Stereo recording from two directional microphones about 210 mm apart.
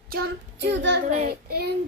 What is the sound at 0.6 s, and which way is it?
Speech, 55° right (ahead or behind).